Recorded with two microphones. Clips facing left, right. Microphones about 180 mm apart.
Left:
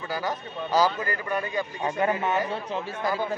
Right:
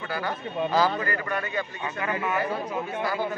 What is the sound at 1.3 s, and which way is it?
Speech, 10° left (ahead or behind).